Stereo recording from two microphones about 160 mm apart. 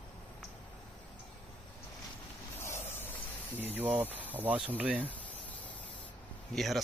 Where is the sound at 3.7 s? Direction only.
10° right (ahead or behind).